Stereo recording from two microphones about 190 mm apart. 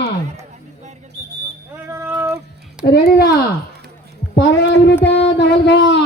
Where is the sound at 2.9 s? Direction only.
60° left (ahead or behind).